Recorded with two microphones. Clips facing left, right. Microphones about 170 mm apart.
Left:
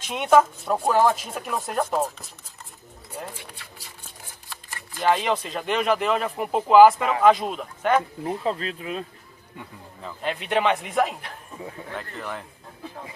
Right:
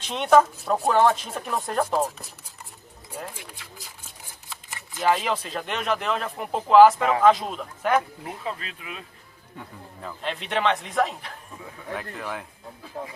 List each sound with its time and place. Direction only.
0.0 s speech: 10° left (ahead or behind)
4.9 s speech: centre (ahead or behind)
8.2 s speech: 35° left (ahead or behind)
9.6 s speech: centre (ahead or behind)